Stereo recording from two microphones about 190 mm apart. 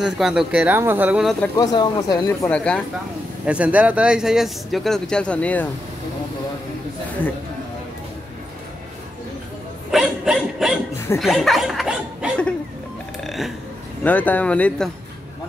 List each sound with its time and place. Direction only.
0.0 s speech: 5° right (ahead or behind)
1.6 s speech: 20° left (ahead or behind)
2.5 s speech: 5° left (ahead or behind)
3.4 s speech: 5° right (ahead or behind)
9.8 s dog: centre (ahead or behind)
11.1 s a sound: centre (ahead or behind)
14.0 s speech: 10° left (ahead or behind)